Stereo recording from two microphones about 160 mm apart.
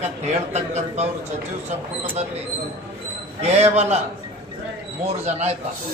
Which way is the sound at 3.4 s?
40° right (ahead or behind).